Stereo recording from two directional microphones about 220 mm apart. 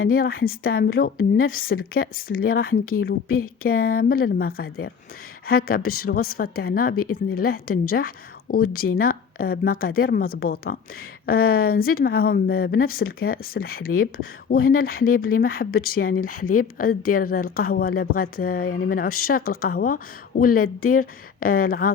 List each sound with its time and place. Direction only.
0.1 s a woman's voice: 40° left (ahead or behind)
6.9 s speech: 90° left
7.3 s a woman's voice: 40° left (ahead or behind)